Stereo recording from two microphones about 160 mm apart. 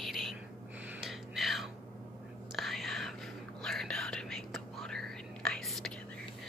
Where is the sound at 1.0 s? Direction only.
Centre (ahead or behind).